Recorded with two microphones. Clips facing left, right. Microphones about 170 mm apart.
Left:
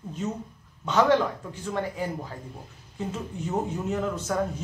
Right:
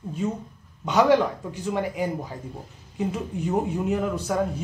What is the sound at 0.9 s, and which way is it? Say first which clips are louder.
Speech: right 3 dB; 15° right (ahead or behind).